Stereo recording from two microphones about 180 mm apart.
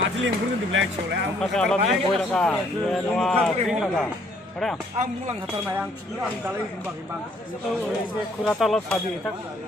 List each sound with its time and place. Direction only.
0.2 s speech: 90° right
1.4 s a man's voice: centre (ahead or behind)
4.9 s speech: 40° right (ahead or behind)
8.5 s a man's voice: centre (ahead or behind)